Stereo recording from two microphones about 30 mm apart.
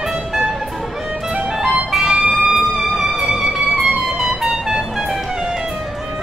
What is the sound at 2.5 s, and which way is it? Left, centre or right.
Music, centre.